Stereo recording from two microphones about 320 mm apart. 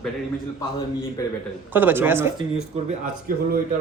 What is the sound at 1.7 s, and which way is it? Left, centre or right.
Speech, centre.